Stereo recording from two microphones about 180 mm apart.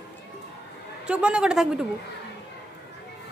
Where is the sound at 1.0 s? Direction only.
5° right (ahead or behind).